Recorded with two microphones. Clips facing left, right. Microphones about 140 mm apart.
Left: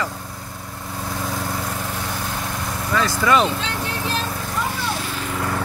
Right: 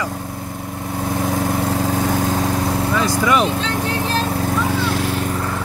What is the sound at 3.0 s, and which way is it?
Speech, 15° right (ahead or behind).